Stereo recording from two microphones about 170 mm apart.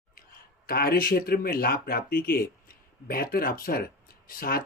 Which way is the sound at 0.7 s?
60° left (ahead or behind).